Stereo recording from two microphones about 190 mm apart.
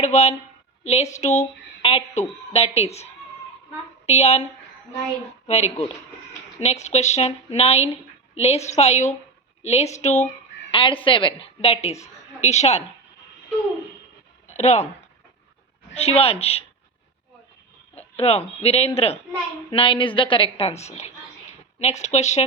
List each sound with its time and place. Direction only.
0.0 s a woman's voice: 35° left (ahead or behind)
5.5 s a woman's voice: 35° left (ahead or behind)
14.4 s a sound: 35° left (ahead or behind)
16.0 s a woman's voice: 35° left (ahead or behind)
17.9 s a woman's voice: 30° left (ahead or behind)